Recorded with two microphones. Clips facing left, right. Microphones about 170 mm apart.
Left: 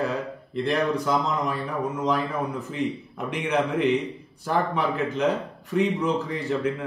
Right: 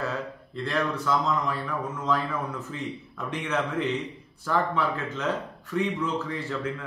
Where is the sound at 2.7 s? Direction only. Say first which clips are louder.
Left 6 dB; 15° left (ahead or behind).